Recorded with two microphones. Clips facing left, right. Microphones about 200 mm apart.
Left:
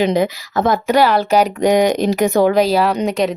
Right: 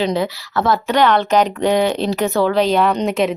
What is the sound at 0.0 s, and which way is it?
Speech, 15° left (ahead or behind).